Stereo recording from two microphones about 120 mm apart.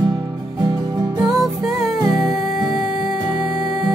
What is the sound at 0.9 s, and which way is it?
Music, 35° right (ahead or behind).